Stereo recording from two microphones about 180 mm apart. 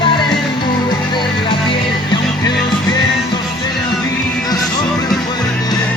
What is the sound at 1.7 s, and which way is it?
Music, 25° left (ahead or behind).